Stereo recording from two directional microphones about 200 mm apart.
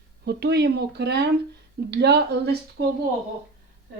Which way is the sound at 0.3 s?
55° right (ahead or behind).